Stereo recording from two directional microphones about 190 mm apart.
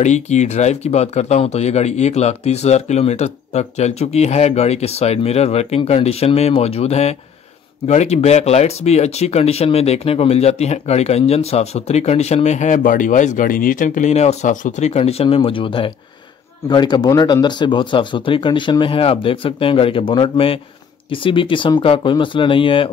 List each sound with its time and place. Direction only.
0.0 s speech: 40° left (ahead or behind)